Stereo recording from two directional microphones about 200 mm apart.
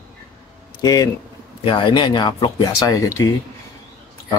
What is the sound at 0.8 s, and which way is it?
A man's voice, 20° left (ahead or behind).